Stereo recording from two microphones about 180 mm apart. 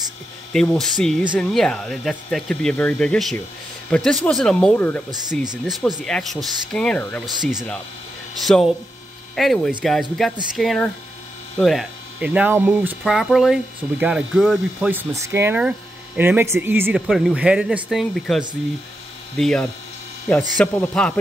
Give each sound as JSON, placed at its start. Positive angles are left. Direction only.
{"t": 0.5, "sound": "speech", "side_deg": 5}